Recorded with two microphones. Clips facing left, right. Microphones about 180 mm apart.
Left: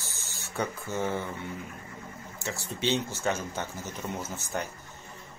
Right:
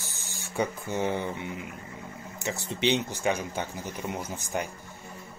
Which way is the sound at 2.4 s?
20° right (ahead or behind).